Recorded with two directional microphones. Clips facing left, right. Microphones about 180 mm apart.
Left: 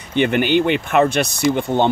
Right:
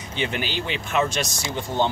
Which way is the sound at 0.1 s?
60° left (ahead or behind).